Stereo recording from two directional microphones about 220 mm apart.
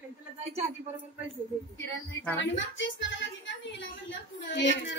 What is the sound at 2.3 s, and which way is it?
A woman's voice, 55° left (ahead or behind).